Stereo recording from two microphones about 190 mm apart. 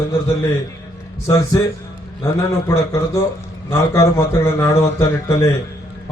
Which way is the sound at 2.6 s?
15° left (ahead or behind).